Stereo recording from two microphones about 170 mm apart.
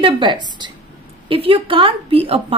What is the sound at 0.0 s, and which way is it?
A woman's voice, 25° right (ahead or behind).